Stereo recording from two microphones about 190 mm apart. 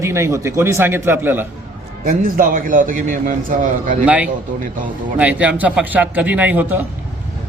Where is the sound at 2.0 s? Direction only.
50° right (ahead or behind).